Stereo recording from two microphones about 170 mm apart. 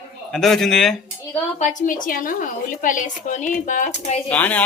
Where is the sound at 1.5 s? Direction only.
50° left (ahead or behind).